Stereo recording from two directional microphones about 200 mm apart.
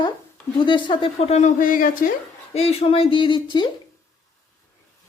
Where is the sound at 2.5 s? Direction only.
30° left (ahead or behind).